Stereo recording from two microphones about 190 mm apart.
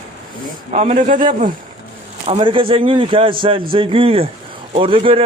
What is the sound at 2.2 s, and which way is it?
A man's voice, 30° right (ahead or behind).